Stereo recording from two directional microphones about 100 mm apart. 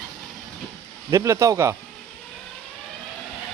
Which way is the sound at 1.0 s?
30° right (ahead or behind).